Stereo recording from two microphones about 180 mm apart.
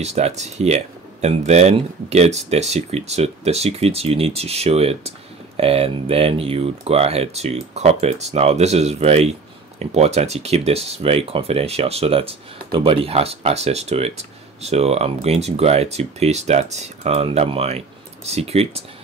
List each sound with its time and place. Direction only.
0.0 s speech: 40° right (ahead or behind)